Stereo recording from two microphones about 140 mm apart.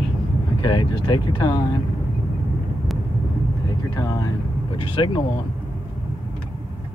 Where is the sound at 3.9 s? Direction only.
30° left (ahead or behind).